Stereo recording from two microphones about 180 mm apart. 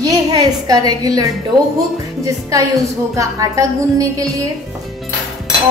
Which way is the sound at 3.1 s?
20° right (ahead or behind).